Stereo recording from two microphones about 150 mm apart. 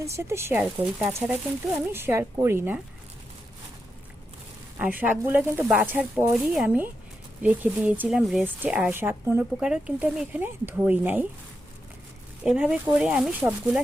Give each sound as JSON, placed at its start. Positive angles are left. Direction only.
{"t": 0.0, "sound": "speech", "side_deg": -15}
{"t": 4.8, "sound": "speech", "side_deg": -10}
{"t": 12.5, "sound": "speech", "side_deg": -5}